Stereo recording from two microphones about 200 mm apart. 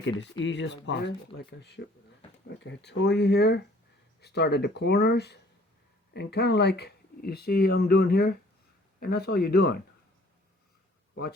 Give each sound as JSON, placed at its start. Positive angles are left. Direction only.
{"t": 0.0, "sound": "speech", "side_deg": 65}
{"t": 11.1, "sound": "speech", "side_deg": 55}